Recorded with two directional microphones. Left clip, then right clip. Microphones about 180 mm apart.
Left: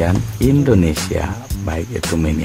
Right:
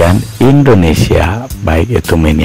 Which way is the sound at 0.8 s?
30° right (ahead or behind).